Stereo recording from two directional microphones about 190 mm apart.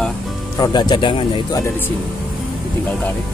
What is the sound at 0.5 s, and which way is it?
Speech, 20° left (ahead or behind).